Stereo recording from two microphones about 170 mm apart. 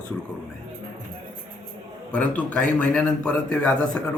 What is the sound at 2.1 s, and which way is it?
A man's voice, 10° left (ahead or behind).